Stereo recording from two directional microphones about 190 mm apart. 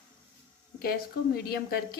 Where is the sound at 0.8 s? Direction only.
50° left (ahead or behind).